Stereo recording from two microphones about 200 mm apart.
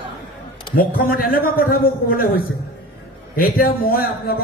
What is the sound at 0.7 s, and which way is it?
A man's voice, 45° left (ahead or behind).